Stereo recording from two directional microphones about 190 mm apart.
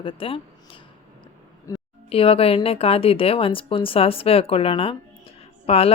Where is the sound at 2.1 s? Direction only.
30° left (ahead or behind).